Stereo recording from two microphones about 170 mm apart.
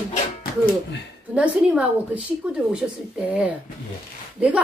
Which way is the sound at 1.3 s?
5° right (ahead or behind).